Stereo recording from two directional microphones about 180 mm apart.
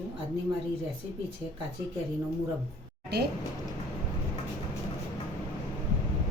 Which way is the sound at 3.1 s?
65° right (ahead or behind).